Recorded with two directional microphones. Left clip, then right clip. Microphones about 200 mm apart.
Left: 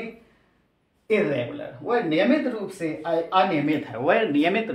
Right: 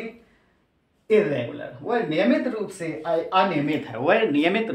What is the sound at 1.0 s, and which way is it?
Speech, 15° right (ahead or behind).